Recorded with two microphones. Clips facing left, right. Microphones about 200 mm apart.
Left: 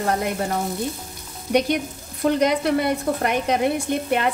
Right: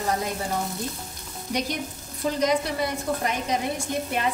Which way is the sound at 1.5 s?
65° left (ahead or behind).